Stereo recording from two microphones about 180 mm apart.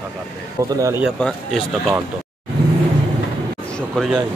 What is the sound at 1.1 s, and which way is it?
Speech, 5° left (ahead or behind).